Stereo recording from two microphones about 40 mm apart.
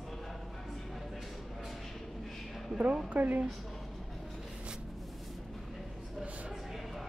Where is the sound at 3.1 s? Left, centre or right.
Right.